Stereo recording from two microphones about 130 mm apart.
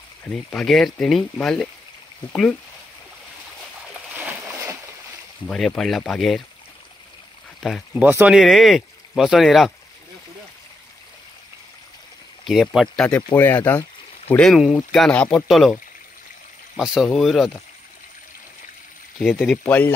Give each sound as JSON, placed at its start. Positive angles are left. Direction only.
{"t": 0.3, "sound": "speech", "side_deg": 5}
{"t": 5.5, "sound": "speech", "side_deg": 5}
{"t": 7.9, "sound": "speech", "side_deg": -15}
{"t": 12.4, "sound": "speech", "side_deg": 0}
{"t": 13.3, "sound": "speech", "side_deg": 20}
{"t": 14.3, "sound": "speech", "side_deg": 0}
{"t": 19.1, "sound": "speech", "side_deg": 5}